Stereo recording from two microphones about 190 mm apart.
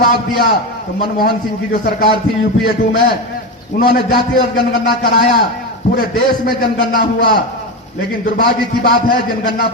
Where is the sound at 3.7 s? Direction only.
40° left (ahead or behind).